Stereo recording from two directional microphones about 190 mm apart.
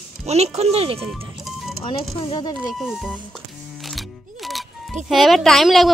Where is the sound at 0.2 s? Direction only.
35° right (ahead or behind).